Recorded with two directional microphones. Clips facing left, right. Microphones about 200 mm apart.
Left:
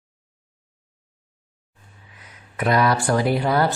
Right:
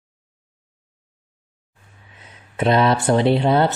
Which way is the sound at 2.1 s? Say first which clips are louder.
Right 5 dB; 25° right (ahead or behind).